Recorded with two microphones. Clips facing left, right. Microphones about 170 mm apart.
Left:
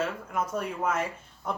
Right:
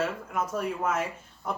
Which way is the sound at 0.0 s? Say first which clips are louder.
Right 1 dB; centre (ahead or behind).